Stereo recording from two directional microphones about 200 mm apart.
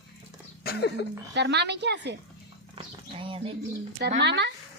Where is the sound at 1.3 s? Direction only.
60° right (ahead or behind).